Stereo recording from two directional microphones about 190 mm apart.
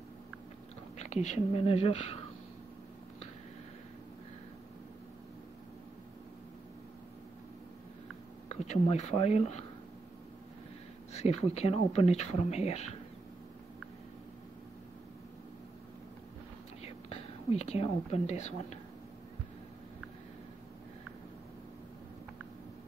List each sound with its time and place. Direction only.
0.9 s speech: 35° left (ahead or behind)
8.5 s speech: 35° left (ahead or behind)
11.1 s speech: 35° left (ahead or behind)
16.8 s speech: 30° left (ahead or behind)